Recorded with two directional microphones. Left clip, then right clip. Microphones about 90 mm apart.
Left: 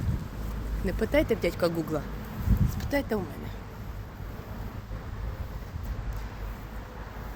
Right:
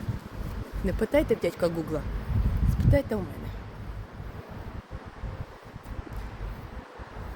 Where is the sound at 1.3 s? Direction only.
35° right (ahead or behind).